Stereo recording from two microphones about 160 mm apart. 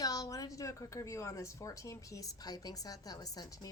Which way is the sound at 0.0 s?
25° left (ahead or behind).